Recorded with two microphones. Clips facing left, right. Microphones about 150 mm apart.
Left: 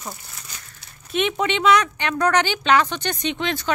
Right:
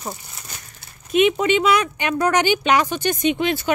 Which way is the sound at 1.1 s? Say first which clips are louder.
Right 6 dB; 5° right (ahead or behind).